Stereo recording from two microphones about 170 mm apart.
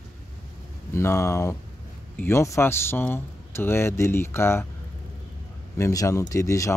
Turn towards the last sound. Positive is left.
turn(degrees=20)  # may be behind; listen again after turning